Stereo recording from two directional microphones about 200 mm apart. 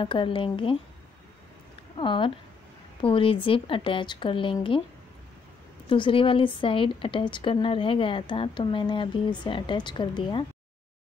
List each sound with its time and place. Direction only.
0.0 s a woman's voice: 25° left (ahead or behind)
2.0 s a woman's voice: 25° left (ahead or behind)
5.9 s a woman's voice: 25° left (ahead or behind)